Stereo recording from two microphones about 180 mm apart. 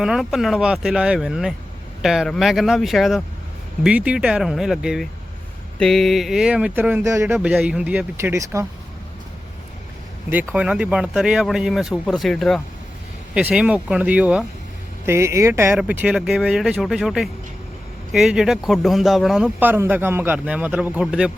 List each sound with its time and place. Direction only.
0.0 s speech: centre (ahead or behind)
7.3 s speech: 5° right (ahead or behind)
10.5 s speech: 5° right (ahead or behind)